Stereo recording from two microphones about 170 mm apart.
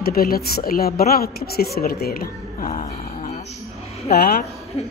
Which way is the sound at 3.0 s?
40° left (ahead or behind).